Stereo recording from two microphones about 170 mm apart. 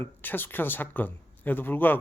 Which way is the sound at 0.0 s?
10° left (ahead or behind).